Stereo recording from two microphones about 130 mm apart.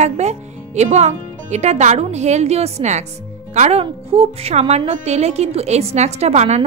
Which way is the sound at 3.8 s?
50° right (ahead or behind).